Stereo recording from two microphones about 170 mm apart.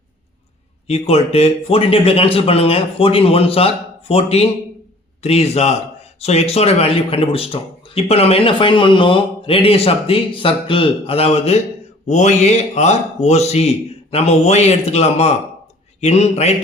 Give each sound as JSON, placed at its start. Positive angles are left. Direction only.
{"t": 0.9, "sound": "speech", "side_deg": 35}